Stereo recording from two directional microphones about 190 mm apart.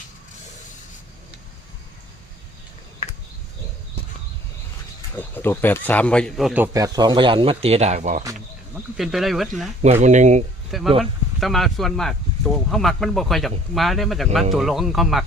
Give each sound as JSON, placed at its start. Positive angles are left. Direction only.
{"t": 5.1, "sound": "speech", "side_deg": 10}
{"t": 6.7, "sound": "speech", "side_deg": -20}
{"t": 9.0, "sound": "speech", "side_deg": 0}
{"t": 9.8, "sound": "speech", "side_deg": -35}
{"t": 10.7, "sound": "speech", "side_deg": 0}